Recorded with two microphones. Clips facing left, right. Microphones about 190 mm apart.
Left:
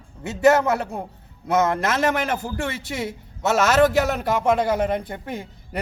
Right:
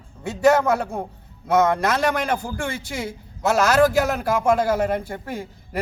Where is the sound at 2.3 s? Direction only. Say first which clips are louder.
Even; 25° left (ahead or behind).